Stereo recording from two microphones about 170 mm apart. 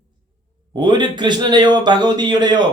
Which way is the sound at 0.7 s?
25° right (ahead or behind).